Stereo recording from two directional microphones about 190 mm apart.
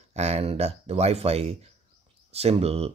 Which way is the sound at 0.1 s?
35° right (ahead or behind).